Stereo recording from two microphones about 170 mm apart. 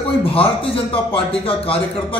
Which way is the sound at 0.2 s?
35° left (ahead or behind).